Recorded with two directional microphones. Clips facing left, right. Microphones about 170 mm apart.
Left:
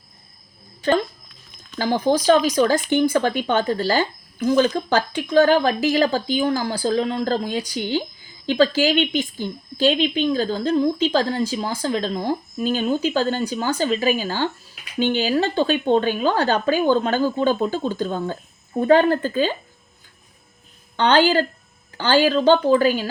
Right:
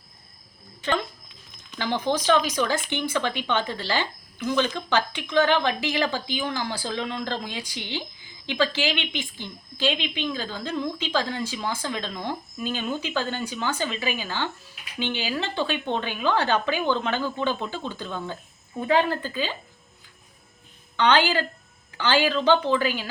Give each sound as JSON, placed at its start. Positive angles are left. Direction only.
{"t": 0.8, "sound": "speech", "side_deg": 40}
{"t": 20.9, "sound": "speech", "side_deg": 40}